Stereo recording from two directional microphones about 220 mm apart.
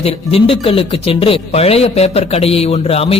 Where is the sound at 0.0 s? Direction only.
25° left (ahead or behind).